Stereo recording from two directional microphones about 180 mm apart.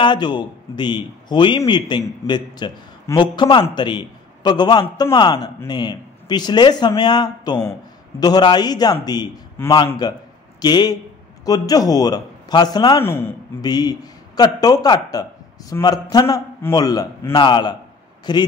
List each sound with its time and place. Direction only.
0.0 s a man's voice: 25° left (ahead or behind)